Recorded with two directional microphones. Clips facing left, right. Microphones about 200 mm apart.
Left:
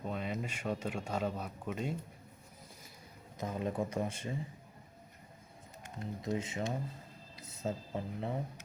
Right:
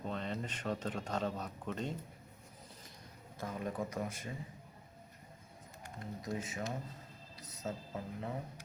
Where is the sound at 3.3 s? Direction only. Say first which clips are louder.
Left 4 dB; 20° left (ahead or behind).